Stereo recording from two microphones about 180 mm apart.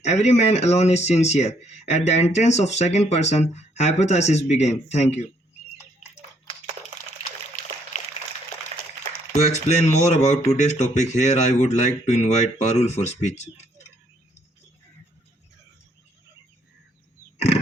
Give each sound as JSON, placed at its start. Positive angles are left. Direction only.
{"t": 0.0, "sound": "speech", "side_deg": 40}
{"t": 7.2, "sound": "a sound", "side_deg": 45}
{"t": 9.6, "sound": "speech", "side_deg": 40}